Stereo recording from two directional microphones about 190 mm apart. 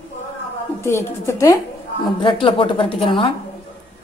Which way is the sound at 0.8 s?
15° left (ahead or behind).